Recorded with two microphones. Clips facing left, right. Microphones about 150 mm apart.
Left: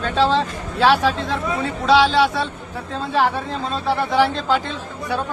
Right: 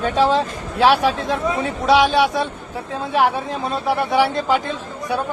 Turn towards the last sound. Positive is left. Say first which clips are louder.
# right 1 dB
turn(degrees=-15)  # may be behind; listen again after turning